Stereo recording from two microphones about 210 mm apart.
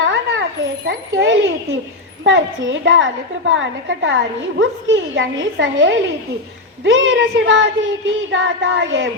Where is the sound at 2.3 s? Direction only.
65° right (ahead or behind).